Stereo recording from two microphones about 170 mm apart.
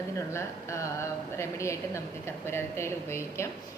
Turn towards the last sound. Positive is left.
turn(degrees=15)  # may be behind; listen again after turning